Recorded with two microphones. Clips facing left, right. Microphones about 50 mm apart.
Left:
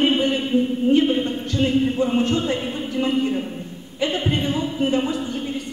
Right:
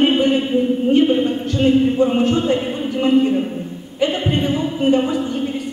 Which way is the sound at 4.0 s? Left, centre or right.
Centre.